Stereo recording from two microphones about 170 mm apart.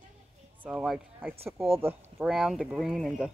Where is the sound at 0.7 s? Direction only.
5° right (ahead or behind).